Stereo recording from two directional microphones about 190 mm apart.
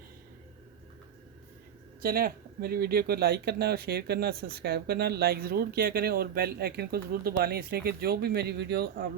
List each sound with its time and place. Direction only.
2.0 s speech: 50° right (ahead or behind)